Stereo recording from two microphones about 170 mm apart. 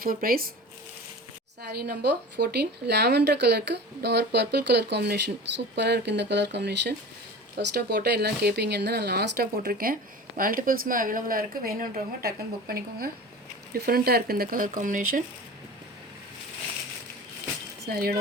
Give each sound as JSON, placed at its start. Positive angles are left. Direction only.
{"t": 0.0, "sound": "speech", "side_deg": -60}
{"t": 1.6, "sound": "speech", "side_deg": -75}
{"t": 17.8, "sound": "speech", "side_deg": -65}